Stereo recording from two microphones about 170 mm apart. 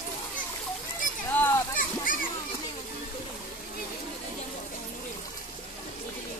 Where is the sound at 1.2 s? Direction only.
10° left (ahead or behind).